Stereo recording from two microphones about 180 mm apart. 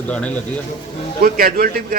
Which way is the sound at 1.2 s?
55° right (ahead or behind).